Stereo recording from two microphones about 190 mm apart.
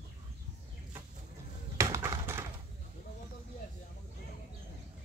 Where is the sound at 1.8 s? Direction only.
15° right (ahead or behind).